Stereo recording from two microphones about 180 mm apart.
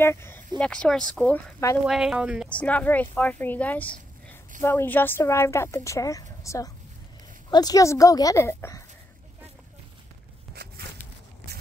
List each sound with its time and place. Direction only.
0.0 s speech: 15° left (ahead or behind)
1.9 s speech: 5° right (ahead or behind)
2.5 s speech: 5° left (ahead or behind)